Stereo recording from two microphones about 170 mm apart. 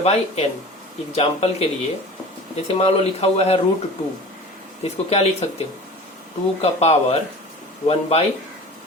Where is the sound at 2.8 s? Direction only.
35° left (ahead or behind).